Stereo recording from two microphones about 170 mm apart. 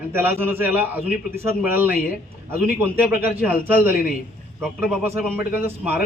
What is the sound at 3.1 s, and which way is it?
Speech, 60° left (ahead or behind).